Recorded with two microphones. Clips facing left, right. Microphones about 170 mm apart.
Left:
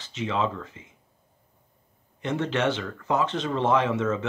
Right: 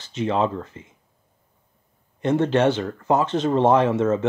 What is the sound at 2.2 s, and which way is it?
Speech, 45° right (ahead or behind).